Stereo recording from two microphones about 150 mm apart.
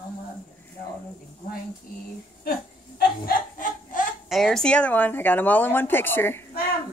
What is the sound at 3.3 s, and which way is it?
Snicker, 65° left (ahead or behind).